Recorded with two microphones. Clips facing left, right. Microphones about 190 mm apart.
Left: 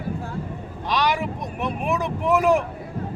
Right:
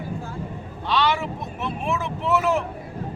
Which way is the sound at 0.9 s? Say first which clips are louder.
Even; 15° left (ahead or behind).